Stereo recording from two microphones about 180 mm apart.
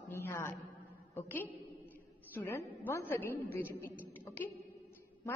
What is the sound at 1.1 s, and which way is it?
A woman's voice, 10° left (ahead or behind).